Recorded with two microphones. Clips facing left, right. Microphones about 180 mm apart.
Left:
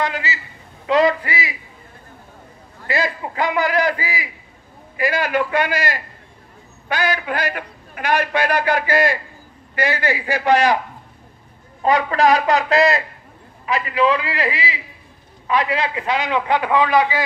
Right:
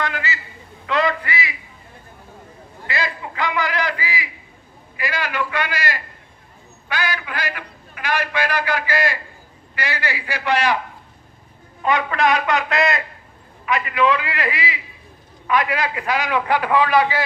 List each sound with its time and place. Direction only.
0.8 s a woman's voice: 35° left (ahead or behind)
2.9 s a man's voice: 45° left (ahead or behind)
6.9 s a man's voice: 50° left (ahead or behind)
11.8 s a woman's voice: 35° left (ahead or behind); by 17.2 s 20° left (ahead or behind)